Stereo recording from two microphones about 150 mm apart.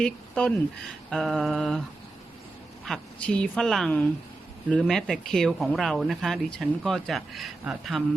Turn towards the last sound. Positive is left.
turn(degrees=0)  # may be behind; listen again after turning